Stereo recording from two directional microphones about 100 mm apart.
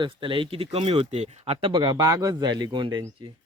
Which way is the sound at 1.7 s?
50° right (ahead or behind).